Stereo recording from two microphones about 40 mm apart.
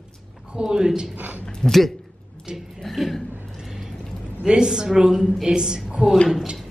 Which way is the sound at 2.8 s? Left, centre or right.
Centre.